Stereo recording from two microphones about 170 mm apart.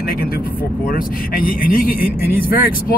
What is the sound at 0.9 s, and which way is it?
Speech, 55° left (ahead or behind).